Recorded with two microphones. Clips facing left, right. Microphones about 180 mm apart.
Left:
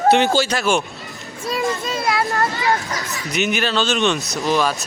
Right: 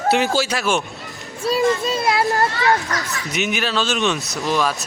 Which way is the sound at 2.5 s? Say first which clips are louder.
Right 2 dB; 20° left (ahead or behind).